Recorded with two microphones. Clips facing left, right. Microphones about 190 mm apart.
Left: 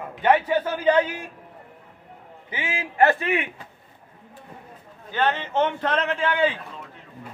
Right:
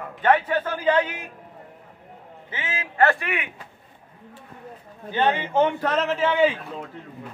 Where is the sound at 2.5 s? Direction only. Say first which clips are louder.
Left 2 dB; 15° left (ahead or behind).